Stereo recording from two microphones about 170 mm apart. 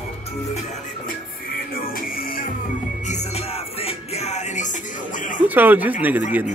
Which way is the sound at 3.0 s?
40° left (ahead or behind).